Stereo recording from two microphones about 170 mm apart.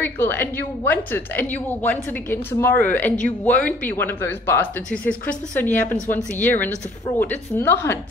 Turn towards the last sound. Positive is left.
turn(degrees=15)  # may be behind; listen again after turning